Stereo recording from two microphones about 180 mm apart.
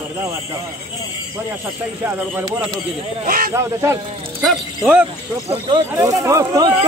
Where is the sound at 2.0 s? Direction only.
10° right (ahead or behind).